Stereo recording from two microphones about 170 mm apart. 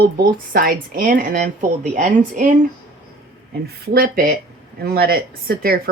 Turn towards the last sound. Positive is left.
turn(degrees=-60)  # may be behind; listen again after turning